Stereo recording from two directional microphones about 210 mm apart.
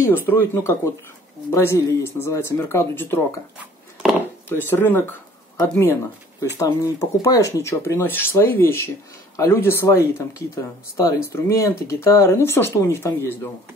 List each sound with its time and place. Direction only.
0.1 s speech: 10° left (ahead or behind)
4.5 s speech: 10° left (ahead or behind)